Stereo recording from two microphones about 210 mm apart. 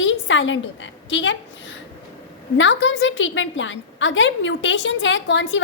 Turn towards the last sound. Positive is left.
turn(degrees=60)  # may be behind; listen again after turning